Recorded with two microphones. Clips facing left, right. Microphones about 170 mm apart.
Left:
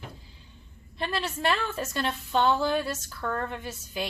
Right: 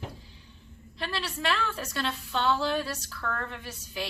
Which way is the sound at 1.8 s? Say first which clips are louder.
Left 3 dB; 20° left (ahead or behind).